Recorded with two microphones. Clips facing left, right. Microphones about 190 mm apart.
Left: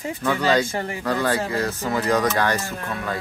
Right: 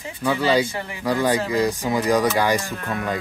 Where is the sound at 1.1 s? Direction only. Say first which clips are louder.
Right 3 dB; 15° right (ahead or behind).